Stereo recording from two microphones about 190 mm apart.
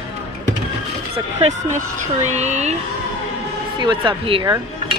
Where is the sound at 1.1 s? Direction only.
30° right (ahead or behind).